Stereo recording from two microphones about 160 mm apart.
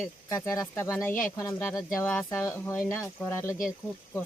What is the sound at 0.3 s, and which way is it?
Speech, 15° left (ahead or behind).